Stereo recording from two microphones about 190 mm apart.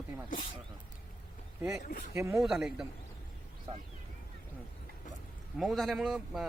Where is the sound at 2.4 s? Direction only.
Centre (ahead or behind).